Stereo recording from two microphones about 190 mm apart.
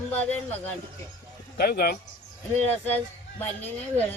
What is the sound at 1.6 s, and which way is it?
Speech, 55° left (ahead or behind).